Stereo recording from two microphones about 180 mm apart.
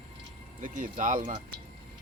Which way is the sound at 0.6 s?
45° right (ahead or behind).